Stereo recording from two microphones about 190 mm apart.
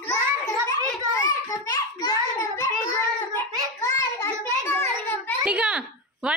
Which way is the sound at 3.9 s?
15° left (ahead or behind).